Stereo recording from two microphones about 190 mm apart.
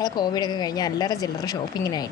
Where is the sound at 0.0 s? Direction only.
20° left (ahead or behind).